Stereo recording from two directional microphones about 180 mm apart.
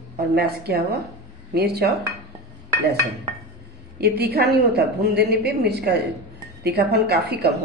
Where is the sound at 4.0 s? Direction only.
60° right (ahead or behind).